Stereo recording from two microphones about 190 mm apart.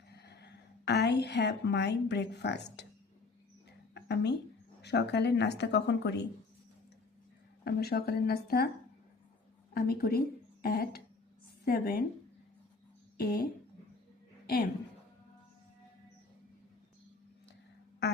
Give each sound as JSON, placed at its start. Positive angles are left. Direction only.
{"t": 0.1, "sound": "a woman's voice", "side_deg": 60}
{"t": 3.9, "sound": "a sound", "side_deg": 65}
{"t": 4.8, "sound": "speech", "side_deg": 65}
{"t": 7.6, "sound": "speech", "side_deg": 55}
{"t": 9.7, "sound": "a woman's voice", "side_deg": 50}
{"t": 13.1, "sound": "a woman's voice", "side_deg": 50}